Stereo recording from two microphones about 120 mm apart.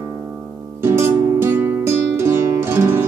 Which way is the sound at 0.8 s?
20° right (ahead or behind).